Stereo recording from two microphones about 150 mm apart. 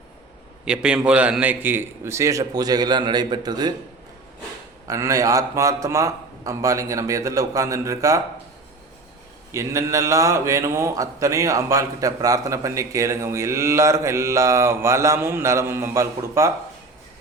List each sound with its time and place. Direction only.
0.6 s a man's voice: 5° right (ahead or behind); by 3.8 s 30° right (ahead or behind)
4.9 s a man's voice: 20° right (ahead or behind)
9.5 s a man's voice: 20° right (ahead or behind)